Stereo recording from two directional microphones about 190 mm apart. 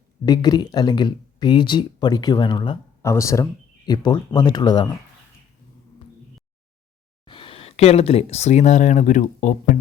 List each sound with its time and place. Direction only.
0.3 s speech: 20° left (ahead or behind)
7.3 s speech: 25° left (ahead or behind)